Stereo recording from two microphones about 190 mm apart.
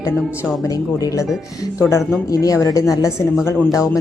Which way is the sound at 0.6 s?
20° left (ahead or behind).